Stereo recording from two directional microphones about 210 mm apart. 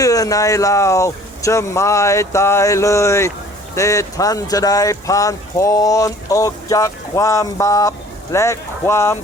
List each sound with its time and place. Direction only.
0.0 s speech: 15° left (ahead or behind)